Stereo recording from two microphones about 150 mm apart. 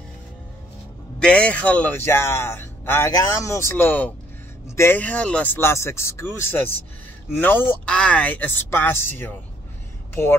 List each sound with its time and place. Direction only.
1.2 s a man's voice: 5° left (ahead or behind)